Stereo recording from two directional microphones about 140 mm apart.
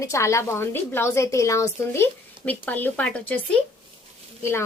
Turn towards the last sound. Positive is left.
turn(degrees=15)  # may be behind; listen again after turning